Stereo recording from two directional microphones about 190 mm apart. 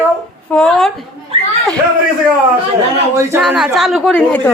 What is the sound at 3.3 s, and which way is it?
A woman's voice, 5° right (ahead or behind).